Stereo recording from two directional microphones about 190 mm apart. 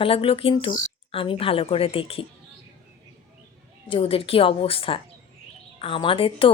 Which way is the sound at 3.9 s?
30° left (ahead or behind).